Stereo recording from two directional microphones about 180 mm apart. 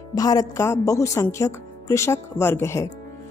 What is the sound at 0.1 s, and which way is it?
A woman's voice, 20° left (ahead or behind).